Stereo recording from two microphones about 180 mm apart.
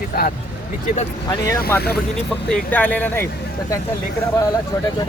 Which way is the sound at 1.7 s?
10° left (ahead or behind).